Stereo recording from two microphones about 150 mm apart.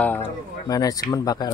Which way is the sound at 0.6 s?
25° left (ahead or behind).